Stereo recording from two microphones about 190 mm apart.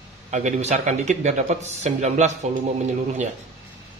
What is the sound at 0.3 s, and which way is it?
Speech, 40° right (ahead or behind).